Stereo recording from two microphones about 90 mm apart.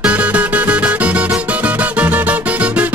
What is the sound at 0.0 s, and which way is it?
Music, 15° right (ahead or behind).